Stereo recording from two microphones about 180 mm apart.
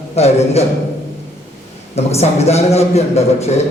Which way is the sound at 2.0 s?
35° left (ahead or behind).